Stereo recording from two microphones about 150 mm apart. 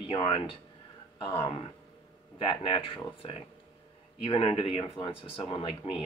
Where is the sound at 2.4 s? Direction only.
35° left (ahead or behind).